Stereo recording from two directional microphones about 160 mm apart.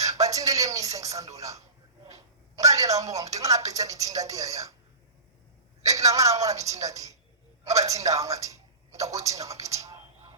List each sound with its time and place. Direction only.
0.2 s speech: 20° right (ahead or behind)
5.9 s speech: 20° right (ahead or behind)